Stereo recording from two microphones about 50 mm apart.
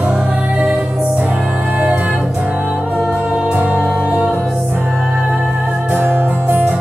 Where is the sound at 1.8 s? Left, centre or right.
Right.